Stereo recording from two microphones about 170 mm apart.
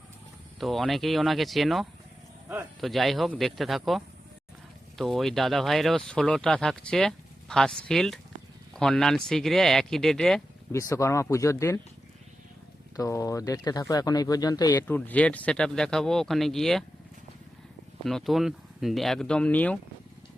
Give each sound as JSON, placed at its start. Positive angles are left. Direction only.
{"t": 0.6, "sound": "speech", "side_deg": 0}
{"t": 10.7, "sound": "speech", "side_deg": 15}
{"t": 13.0, "sound": "speech", "side_deg": 20}
{"t": 14.8, "sound": "speech", "side_deg": 10}
{"t": 18.0, "sound": "speech", "side_deg": 0}